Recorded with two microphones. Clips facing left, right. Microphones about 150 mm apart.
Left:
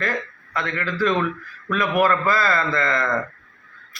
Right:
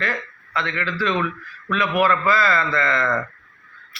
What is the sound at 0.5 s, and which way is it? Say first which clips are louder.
A man's voice: even; 45° left (ahead or behind).